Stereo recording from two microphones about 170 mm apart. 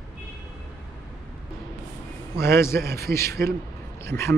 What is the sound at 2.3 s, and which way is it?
A man's voice, 15° left (ahead or behind).